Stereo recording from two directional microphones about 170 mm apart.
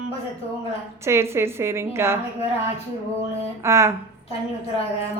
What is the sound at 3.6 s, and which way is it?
Speech, 15° right (ahead or behind).